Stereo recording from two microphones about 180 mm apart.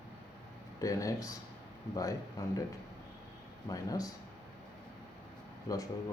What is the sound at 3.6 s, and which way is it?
Speech, 20° left (ahead or behind).